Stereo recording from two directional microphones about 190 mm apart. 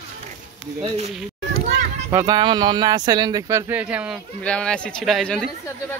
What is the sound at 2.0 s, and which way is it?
Speech, 20° right (ahead or behind).